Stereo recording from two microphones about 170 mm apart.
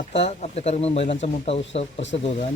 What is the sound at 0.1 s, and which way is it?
Speech, 35° left (ahead or behind).